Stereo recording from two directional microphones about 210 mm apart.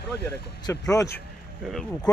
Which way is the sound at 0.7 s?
15° left (ahead or behind).